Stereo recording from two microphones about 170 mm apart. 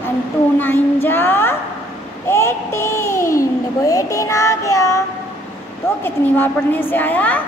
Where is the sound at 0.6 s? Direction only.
10° left (ahead or behind).